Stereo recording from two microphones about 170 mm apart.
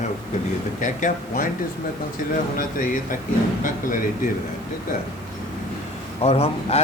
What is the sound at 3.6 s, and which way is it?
Speech, 50° left (ahead or behind).